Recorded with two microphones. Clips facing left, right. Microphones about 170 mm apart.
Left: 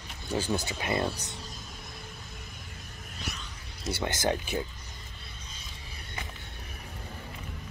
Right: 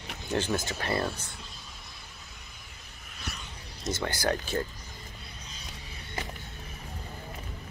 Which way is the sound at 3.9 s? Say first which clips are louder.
Even; 20° left (ahead or behind).